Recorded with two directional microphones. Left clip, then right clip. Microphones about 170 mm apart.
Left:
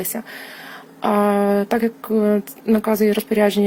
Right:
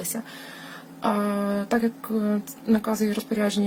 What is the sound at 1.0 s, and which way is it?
Speech, 35° left (ahead or behind).